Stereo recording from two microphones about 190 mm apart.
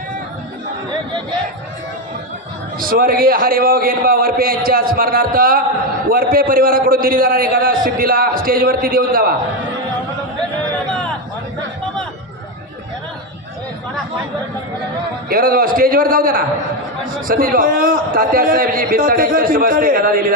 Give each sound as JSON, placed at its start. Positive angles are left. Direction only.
{"t": 2.7, "sound": "a man's voice", "side_deg": -50}
{"t": 15.3, "sound": "a man's voice", "side_deg": -50}